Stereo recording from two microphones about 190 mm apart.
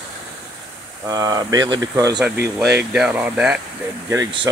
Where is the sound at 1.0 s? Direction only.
20° right (ahead or behind).